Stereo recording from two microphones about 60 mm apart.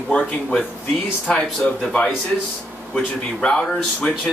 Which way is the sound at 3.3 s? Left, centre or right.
Centre.